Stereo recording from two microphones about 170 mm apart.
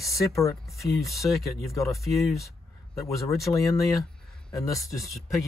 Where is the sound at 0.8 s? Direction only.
Centre (ahead or behind).